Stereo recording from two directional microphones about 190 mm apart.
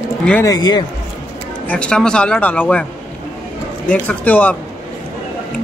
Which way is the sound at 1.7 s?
5° left (ahead or behind).